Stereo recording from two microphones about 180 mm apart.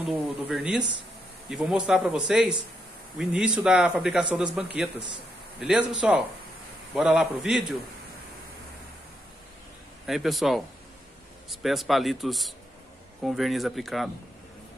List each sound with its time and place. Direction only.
0.1 s speech: 5° right (ahead or behind)
5.6 s speech: 5° right (ahead or behind)
10.0 s speech: centre (ahead or behind)
11.6 s speech: centre (ahead or behind)